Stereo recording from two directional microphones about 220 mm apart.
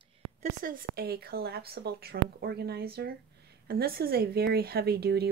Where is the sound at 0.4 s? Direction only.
40° right (ahead or behind).